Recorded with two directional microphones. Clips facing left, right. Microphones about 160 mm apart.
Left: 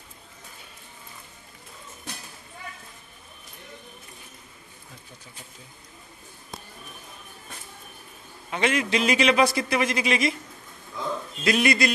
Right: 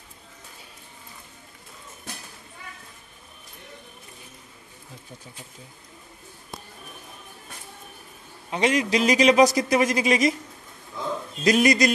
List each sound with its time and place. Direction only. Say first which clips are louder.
8.5 s a man's voice: right 2 dB; 35° right (ahead or behind)
11.4 s a man's voice: right 3 dB; 40° right (ahead or behind)